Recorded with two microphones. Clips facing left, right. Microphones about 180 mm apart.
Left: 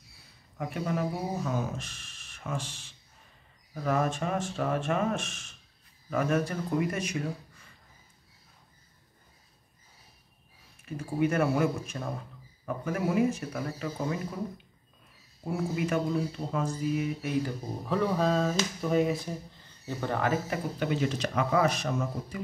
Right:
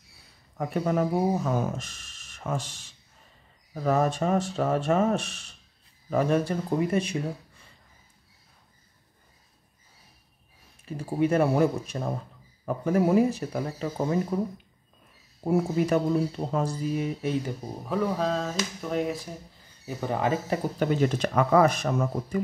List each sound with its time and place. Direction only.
0.6 s speech: 45° right (ahead or behind)
3.8 s speech: 35° right (ahead or behind)
10.9 s speech: 30° right (ahead or behind)
17.8 s speech: 5° right (ahead or behind)
19.9 s speech: 15° right (ahead or behind)
20.4 s speech: 45° right (ahead or behind)